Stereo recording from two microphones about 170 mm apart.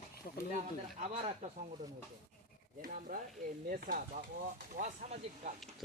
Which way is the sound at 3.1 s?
55° right (ahead or behind).